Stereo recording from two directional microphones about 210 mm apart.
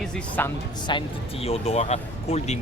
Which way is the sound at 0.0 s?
10° left (ahead or behind).